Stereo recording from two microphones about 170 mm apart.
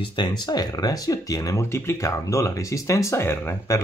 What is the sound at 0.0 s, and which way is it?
Speech, 25° left (ahead or behind).